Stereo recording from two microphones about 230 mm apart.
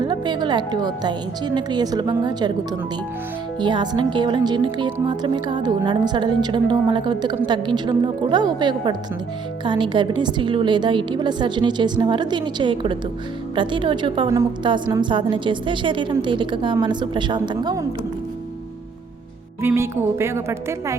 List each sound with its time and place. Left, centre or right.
0.0 s a woman's voice: centre
3.6 s a woman's voice: centre
19.6 s a woman's voice: centre